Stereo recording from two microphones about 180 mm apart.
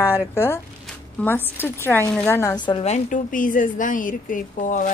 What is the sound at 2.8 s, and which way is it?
A woman's voice, 45° left (ahead or behind).